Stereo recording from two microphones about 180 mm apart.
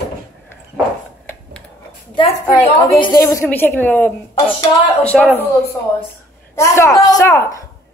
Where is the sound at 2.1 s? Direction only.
25° left (ahead or behind); by 4.1 s 10° left (ahead or behind).